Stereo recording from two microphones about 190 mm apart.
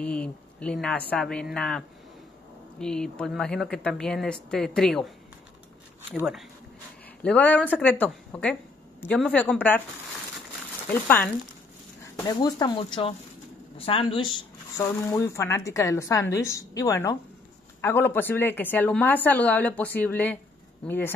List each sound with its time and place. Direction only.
0.0 s speech: 5° left (ahead or behind)
6.1 s speech: centre (ahead or behind)
10.9 s speech: 10° left (ahead or behind)
12.0 s speech: 20° left (ahead or behind)
14.8 s speech: 15° left (ahead or behind)